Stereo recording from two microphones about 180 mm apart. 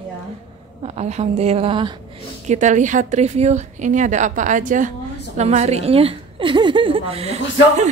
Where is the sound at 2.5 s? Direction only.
40° right (ahead or behind).